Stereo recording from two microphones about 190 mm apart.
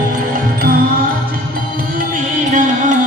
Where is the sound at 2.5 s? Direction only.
40° right (ahead or behind).